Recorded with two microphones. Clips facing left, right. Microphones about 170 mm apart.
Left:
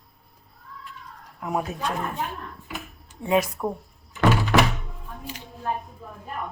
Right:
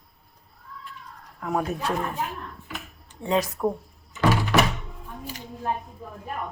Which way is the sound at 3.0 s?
10° left (ahead or behind).